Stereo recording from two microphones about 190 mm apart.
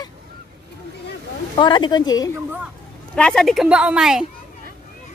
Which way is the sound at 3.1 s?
5° left (ahead or behind).